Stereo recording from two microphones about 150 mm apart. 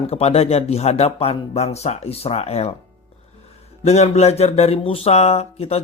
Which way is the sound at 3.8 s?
45° left (ahead or behind).